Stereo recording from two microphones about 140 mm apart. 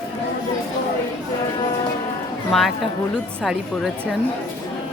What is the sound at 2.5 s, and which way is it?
A woman's voice, centre (ahead or behind).